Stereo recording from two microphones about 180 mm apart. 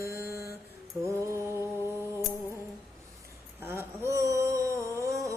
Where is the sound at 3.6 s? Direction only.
15° right (ahead or behind).